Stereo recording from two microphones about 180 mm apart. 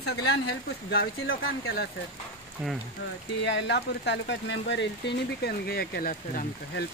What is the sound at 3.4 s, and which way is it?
Speech, 80° left.